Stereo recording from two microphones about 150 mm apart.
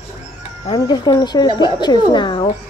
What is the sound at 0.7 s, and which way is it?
Speech, 30° left (ahead or behind).